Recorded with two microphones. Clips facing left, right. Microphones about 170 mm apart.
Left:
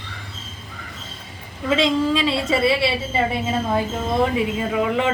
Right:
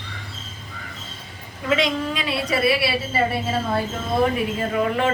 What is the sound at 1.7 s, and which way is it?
A woman's voice, 25° left (ahead or behind).